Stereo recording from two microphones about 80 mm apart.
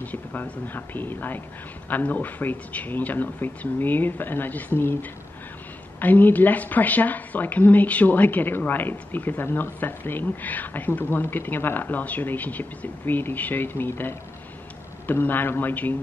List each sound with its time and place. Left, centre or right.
0.0 s a woman's voice: left
5.9 s a woman's voice: left